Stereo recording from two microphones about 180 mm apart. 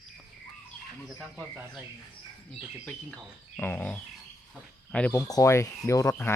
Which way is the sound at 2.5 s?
Centre (ahead or behind).